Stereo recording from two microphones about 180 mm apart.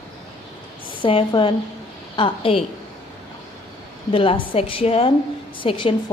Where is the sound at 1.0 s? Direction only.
30° left (ahead or behind).